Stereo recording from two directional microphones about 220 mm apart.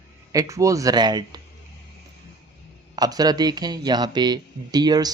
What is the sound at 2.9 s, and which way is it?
Speech, 15° right (ahead or behind).